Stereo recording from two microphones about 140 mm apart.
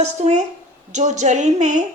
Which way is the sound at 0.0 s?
55° right (ahead or behind).